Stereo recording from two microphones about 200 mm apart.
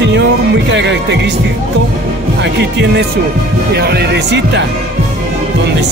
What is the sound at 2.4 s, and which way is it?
Speech, 60° right (ahead or behind).